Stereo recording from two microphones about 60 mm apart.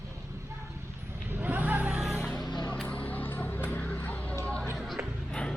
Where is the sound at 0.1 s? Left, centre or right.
Right.